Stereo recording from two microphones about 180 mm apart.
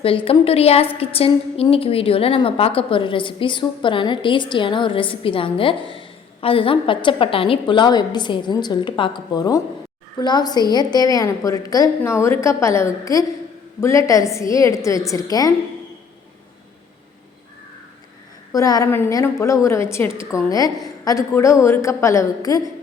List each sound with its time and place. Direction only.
0.0 s a woman's voice: 30° left (ahead or behind)
18.5 s a woman's voice: 20° left (ahead or behind)